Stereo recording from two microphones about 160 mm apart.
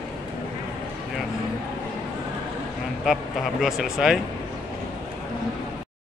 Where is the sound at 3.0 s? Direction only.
Centre (ahead or behind).